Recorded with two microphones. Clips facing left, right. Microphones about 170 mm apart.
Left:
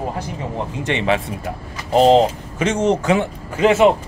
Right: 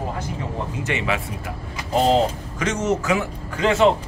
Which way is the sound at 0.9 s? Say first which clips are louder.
Left 6 dB; 30° left (ahead or behind).